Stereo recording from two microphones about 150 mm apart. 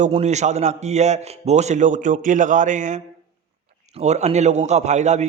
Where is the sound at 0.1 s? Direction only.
50° right (ahead or behind).